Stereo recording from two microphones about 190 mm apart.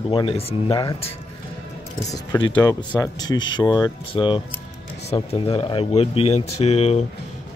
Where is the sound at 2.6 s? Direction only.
15° left (ahead or behind).